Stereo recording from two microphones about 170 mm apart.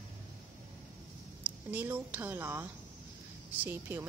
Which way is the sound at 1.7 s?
10° right (ahead or behind).